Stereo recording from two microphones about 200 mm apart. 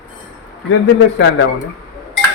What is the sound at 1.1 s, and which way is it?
Speech, 70° left (ahead or behind).